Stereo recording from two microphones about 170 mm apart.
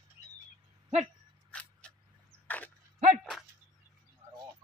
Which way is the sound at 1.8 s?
5° left (ahead or behind).